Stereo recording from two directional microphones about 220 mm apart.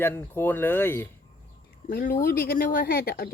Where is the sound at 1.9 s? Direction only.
40° left (ahead or behind).